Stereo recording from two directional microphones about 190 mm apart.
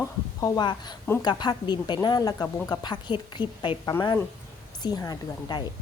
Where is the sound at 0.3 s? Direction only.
20° left (ahead or behind).